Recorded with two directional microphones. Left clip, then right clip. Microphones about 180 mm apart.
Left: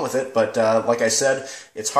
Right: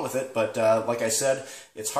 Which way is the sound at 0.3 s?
15° left (ahead or behind).